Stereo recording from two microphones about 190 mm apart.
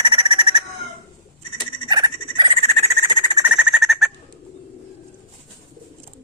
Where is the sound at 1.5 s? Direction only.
25° right (ahead or behind).